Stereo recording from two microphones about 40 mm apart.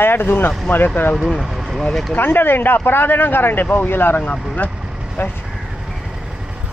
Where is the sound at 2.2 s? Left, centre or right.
Left.